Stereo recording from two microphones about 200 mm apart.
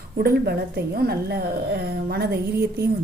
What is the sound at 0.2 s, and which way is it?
A woman's voice, 50° right (ahead or behind).